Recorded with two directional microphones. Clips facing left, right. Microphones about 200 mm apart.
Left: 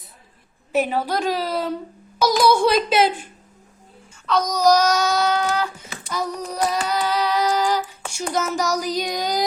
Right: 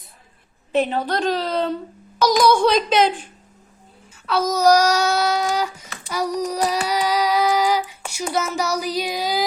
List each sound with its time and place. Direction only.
0.7 s a woman's voice: 5° left (ahead or behind)
4.3 s a child's voice: 5° right (ahead or behind)
6.1 s child singing: 10° right (ahead or behind)